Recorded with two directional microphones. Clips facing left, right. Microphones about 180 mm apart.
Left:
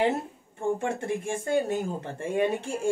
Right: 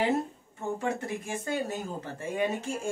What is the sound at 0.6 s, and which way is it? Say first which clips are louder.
Speech: left 3 dB; 25° left (ahead or behind).